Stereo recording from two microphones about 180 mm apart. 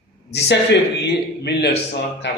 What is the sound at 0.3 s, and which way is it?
A man's voice, 70° left (ahead or behind).